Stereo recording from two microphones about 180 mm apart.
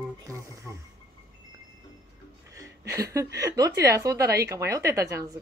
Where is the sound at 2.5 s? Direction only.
15° right (ahead or behind).